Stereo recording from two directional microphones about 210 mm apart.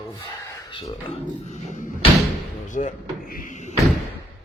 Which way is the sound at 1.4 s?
35° left (ahead or behind).